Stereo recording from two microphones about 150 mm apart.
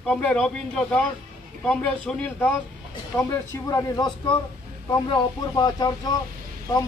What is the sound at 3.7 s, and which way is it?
Speech, 25° left (ahead or behind).